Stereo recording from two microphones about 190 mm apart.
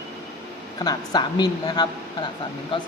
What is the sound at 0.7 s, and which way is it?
A woman's voice, 20° left (ahead or behind).